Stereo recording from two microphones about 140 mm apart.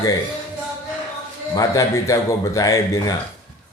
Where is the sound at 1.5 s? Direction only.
25° left (ahead or behind).